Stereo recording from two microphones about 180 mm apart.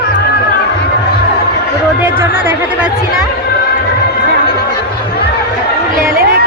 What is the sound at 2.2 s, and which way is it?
Speech, 10° right (ahead or behind).